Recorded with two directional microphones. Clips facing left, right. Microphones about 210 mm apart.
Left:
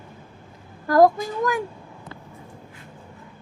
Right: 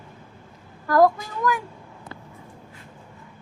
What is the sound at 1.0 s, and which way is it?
Speech, 40° left (ahead or behind).